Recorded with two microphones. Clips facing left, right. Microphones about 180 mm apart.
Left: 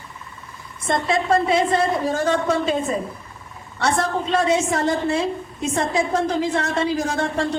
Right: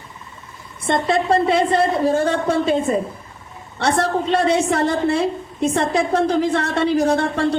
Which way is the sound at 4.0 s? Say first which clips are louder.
Right 4 dB; 35° right (ahead or behind).